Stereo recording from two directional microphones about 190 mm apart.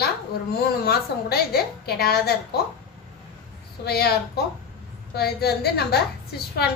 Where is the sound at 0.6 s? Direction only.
55° left (ahead or behind).